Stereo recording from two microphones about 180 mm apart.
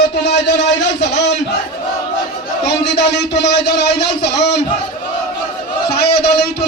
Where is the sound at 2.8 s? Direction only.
70° left (ahead or behind).